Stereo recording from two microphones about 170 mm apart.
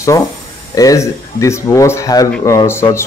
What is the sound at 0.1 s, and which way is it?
Speech, 20° left (ahead or behind).